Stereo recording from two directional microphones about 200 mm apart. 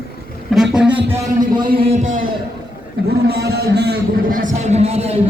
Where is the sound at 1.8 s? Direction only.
35° right (ahead or behind).